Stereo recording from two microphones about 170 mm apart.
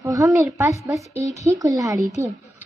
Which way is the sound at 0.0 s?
20° right (ahead or behind).